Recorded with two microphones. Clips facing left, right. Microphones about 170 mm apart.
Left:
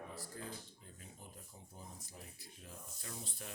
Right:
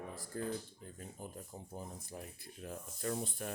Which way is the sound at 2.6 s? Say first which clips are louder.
Right 13 dB; 60° right (ahead or behind).